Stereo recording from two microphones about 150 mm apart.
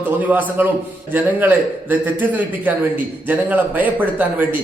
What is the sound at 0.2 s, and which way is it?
A man's voice, 10° right (ahead or behind).